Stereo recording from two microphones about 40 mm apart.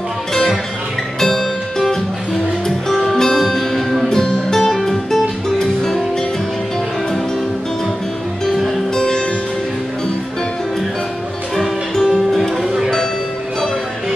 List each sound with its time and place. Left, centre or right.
0.3 s music: centre
4.1 s guitar: centre
5.6 s music: centre
8.5 s music: centre
8.9 s music: centre
11.9 s music: centre